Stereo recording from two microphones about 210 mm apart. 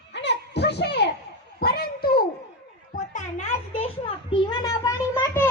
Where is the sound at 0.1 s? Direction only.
55° left (ahead or behind).